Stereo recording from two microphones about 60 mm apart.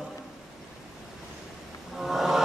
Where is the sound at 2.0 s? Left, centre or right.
Centre.